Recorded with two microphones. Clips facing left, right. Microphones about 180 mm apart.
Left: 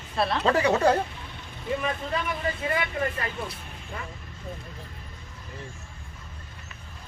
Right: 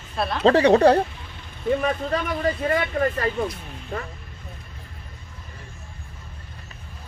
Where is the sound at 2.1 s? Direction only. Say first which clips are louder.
Right 5 dB; 40° right (ahead or behind).